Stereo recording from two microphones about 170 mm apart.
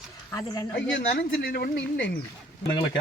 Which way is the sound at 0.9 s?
85° left.